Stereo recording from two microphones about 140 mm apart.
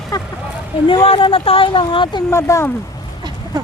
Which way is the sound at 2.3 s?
20° left (ahead or behind).